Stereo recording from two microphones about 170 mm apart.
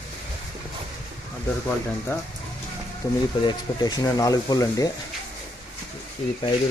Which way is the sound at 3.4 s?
25° left (ahead or behind).